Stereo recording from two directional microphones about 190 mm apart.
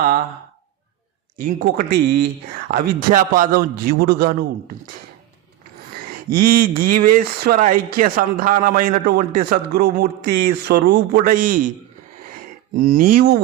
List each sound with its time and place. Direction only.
1.4 s speech: 50° right (ahead or behind)
6.5 s speech: 50° right (ahead or behind)
12.7 s speech: 45° right (ahead or behind)